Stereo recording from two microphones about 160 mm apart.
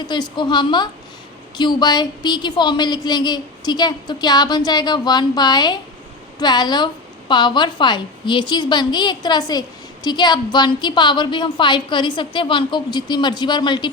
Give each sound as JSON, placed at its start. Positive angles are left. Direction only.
{"t": 0.1, "sound": "a woman's voice", "side_deg": 30}